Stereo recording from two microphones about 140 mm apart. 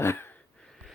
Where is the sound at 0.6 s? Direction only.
Centre (ahead or behind).